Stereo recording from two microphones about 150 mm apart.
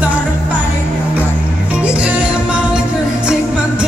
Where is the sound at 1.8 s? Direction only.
10° right (ahead or behind).